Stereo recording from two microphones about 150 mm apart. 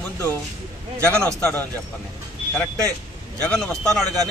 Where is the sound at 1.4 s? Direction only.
15° left (ahead or behind).